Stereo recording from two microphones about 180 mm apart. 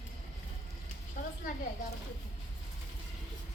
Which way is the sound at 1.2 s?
50° left (ahead or behind).